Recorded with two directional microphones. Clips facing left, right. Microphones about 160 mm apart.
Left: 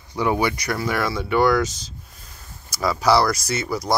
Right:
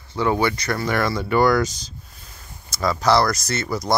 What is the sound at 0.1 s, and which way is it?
Speech, 15° left (ahead or behind).